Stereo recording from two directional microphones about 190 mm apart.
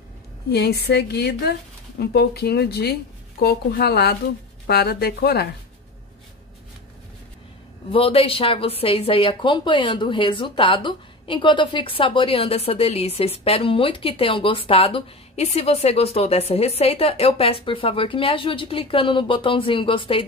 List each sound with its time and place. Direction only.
0.5 s speech: 60° left (ahead or behind)
7.9 s a woman's voice: 30° left (ahead or behind)